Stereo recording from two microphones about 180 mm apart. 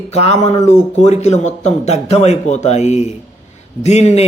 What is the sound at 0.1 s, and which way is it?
Speech, 35° left (ahead or behind).